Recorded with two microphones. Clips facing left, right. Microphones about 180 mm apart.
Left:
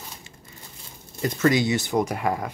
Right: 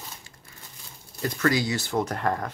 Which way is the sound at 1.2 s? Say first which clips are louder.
Left 4 dB; 20° left (ahead or behind).